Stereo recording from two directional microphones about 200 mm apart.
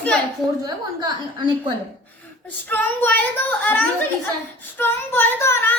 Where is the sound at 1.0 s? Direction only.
25° right (ahead or behind).